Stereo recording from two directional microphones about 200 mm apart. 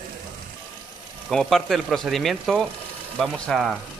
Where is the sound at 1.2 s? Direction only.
Centre (ahead or behind).